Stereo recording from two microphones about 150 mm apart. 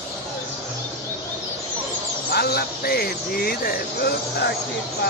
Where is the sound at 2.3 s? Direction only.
90° left.